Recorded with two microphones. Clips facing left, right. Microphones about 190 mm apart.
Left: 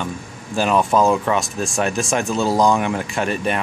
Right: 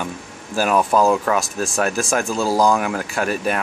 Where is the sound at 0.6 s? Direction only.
5° right (ahead or behind).